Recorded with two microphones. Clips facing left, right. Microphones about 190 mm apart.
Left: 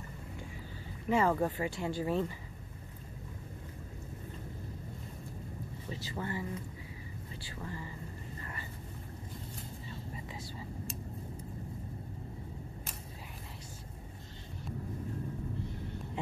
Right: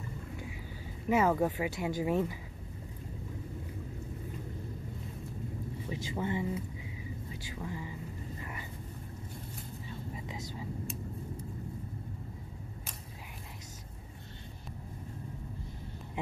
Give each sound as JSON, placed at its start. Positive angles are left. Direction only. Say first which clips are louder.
{"t": 1.1, "sound": "speech", "louder": "right 2 dB", "side_deg": -10}
{"t": 5.9, "sound": "speech", "louder": "right 4 dB", "side_deg": -15}
{"t": 7.5, "sound": "speech", "louder": "right 2 dB", "side_deg": -10}
{"t": 8.4, "sound": "a sound", "louder": "right 2 dB", "side_deg": -10}